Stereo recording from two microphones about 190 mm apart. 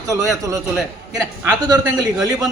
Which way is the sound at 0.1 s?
20° right (ahead or behind).